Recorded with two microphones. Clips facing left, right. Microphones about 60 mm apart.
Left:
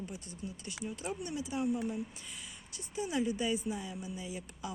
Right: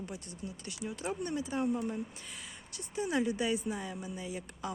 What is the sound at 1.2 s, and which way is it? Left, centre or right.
Speech, right.